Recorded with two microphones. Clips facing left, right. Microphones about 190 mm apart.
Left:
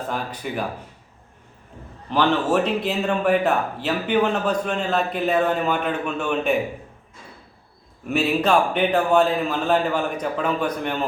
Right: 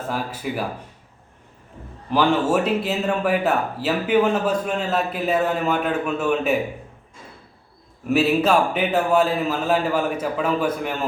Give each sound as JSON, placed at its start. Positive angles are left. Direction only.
{"t": 0.1, "sound": "a man's voice", "side_deg": -5}
{"t": 2.0, "sound": "a man's voice", "side_deg": -10}
{"t": 8.0, "sound": "a man's voice", "side_deg": -5}